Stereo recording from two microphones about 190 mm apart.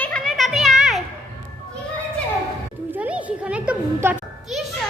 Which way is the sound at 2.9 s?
5° right (ahead or behind).